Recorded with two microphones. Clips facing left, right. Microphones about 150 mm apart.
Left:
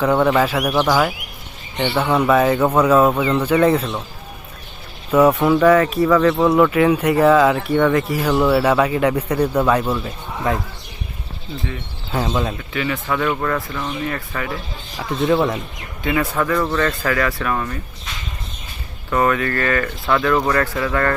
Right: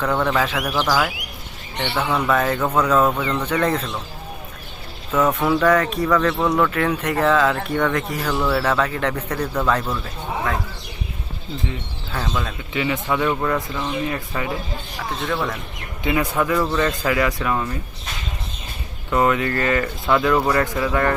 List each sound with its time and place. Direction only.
0.0 s speech: 10° left (ahead or behind)
5.4 s speech: centre (ahead or behind)
12.1 s speech: 20° left (ahead or behind)
12.7 s speech: 20° right (ahead or behind)
15.3 s speech: 20° left (ahead or behind)
16.0 s speech: 15° right (ahead or behind)
19.1 s speech: 20° right (ahead or behind)
20.3 s speech: 5° right (ahead or behind)
20.6 s speech: 15° right (ahead or behind)